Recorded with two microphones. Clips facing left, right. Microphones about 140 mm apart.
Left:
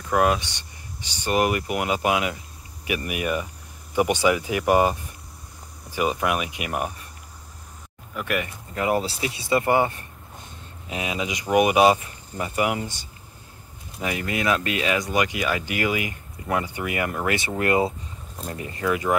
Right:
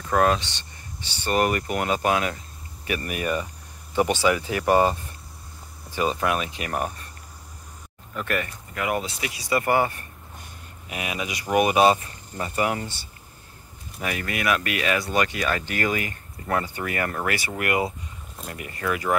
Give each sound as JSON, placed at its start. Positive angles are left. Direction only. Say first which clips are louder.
{"t": 0.1, "sound": "speech", "louder": "even", "side_deg": 15}
{"t": 8.1, "sound": "speech", "louder": "left 1 dB", "side_deg": 10}
{"t": 8.7, "sound": "speech", "louder": "left 3 dB", "side_deg": 30}